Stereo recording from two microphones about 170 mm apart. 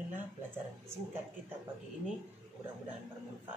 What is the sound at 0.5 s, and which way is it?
Speech, 15° right (ahead or behind).